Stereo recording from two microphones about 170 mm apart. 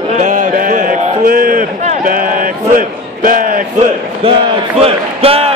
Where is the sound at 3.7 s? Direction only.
30° right (ahead or behind).